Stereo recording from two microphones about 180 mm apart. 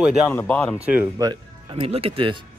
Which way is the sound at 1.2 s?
25° right (ahead or behind).